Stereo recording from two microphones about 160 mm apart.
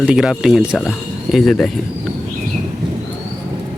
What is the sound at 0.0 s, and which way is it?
Speech, 5° right (ahead or behind).